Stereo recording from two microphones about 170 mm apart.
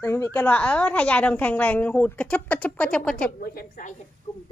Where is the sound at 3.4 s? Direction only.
55° left (ahead or behind).